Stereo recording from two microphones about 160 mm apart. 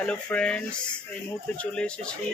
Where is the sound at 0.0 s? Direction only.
5° left (ahead or behind).